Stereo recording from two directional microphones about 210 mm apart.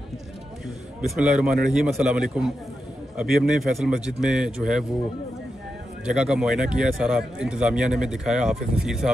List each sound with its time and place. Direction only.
1.0 s speech: 5° right (ahead or behind)
6.0 s speech: 5° right (ahead or behind)